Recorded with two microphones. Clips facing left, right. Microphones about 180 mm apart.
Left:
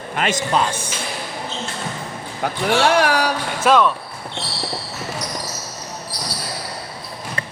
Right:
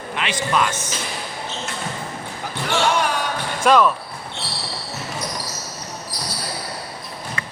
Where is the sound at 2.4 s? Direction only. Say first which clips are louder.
Left 4 dB; 70° left (ahead or behind).